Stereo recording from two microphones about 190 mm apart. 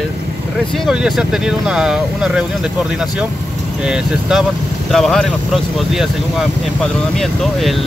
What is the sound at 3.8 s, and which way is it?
Speech, 5° right (ahead or behind).